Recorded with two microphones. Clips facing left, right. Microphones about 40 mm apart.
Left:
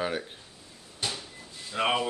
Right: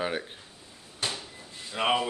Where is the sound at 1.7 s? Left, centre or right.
Centre.